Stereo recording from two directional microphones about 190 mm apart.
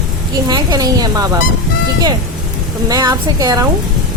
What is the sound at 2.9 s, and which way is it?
Speech, 20° right (ahead or behind).